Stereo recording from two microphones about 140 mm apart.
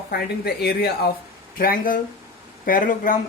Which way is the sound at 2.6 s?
75° left (ahead or behind).